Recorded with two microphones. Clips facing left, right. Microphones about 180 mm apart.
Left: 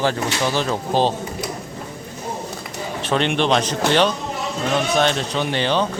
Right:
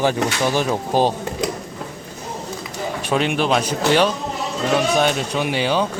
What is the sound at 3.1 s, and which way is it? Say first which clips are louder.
A man's voice: even; 5° right (ahead or behind).